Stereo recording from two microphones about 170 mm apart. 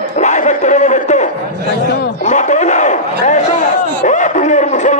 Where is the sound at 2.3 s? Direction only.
45° left (ahead or behind).